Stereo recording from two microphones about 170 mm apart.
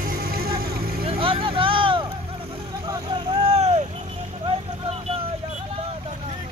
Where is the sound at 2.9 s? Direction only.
30° right (ahead or behind).